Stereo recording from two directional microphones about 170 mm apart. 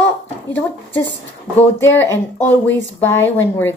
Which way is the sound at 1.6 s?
15° left (ahead or behind).